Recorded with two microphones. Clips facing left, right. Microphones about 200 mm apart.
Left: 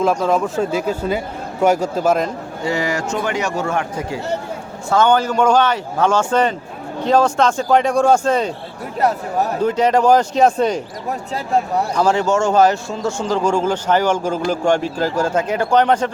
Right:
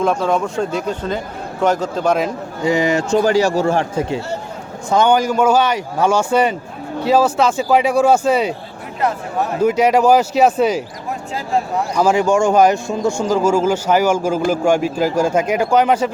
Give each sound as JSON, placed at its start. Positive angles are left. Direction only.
{"t": 0.0, "sound": "a man's voice", "side_deg": 5}
{"t": 2.6, "sound": "speech", "side_deg": -20}
{"t": 3.1, "sound": "speech", "side_deg": -35}
{"t": 4.9, "sound": "speech", "side_deg": -15}
{"t": 9.0, "sound": "speech", "side_deg": 40}
{"t": 9.6, "sound": "speech", "side_deg": -10}
{"t": 11.9, "sound": "speech", "side_deg": -10}